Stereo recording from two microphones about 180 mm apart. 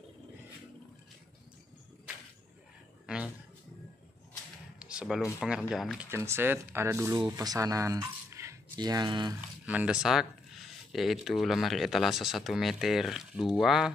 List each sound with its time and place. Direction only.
4.7 s speech: 5° right (ahead or behind)
6.0 s speech: 15° right (ahead or behind)
9.7 s speech: 5° right (ahead or behind)